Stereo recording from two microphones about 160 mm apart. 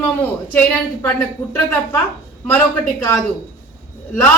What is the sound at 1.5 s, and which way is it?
Speech, 10° left (ahead or behind).